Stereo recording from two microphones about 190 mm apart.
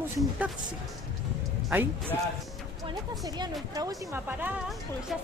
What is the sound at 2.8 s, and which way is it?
Speech, 20° right (ahead or behind).